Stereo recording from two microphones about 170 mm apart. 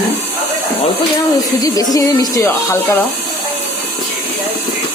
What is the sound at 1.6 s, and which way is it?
Speech, 20° left (ahead or behind).